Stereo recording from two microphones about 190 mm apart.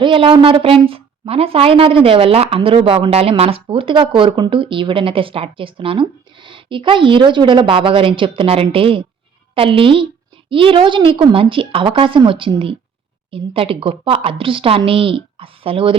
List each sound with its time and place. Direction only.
0.0 s a woman's voice: 25° right (ahead or behind)